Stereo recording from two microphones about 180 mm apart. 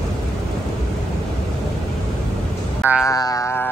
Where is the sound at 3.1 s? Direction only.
20° left (ahead or behind).